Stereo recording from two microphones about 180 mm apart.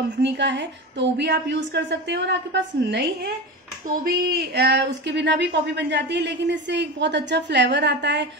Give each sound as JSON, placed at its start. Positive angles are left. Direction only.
{"t": 0.2, "sound": "speech", "side_deg": -80}